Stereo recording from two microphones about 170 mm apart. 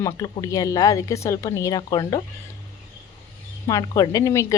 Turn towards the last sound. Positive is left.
turn(degrees=20)  # may be behind; listen again after turning